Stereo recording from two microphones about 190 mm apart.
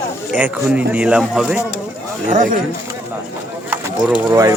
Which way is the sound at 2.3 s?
45° right (ahead or behind).